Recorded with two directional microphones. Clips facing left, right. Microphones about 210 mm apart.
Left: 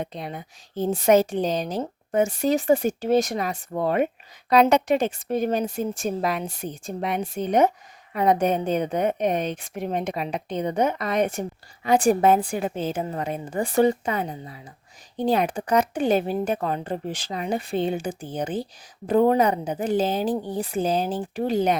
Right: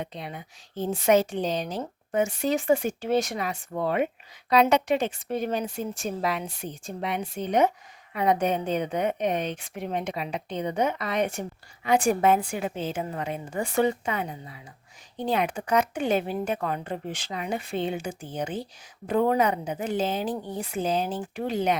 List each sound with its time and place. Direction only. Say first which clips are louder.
0.0 s a woman's voice: left 4 dB; 45° left (ahead or behind)